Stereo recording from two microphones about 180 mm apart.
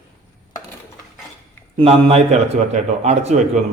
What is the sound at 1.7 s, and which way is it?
A man's voice, 35° right (ahead or behind).